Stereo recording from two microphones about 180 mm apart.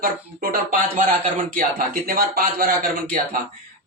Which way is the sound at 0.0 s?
55° right (ahead or behind).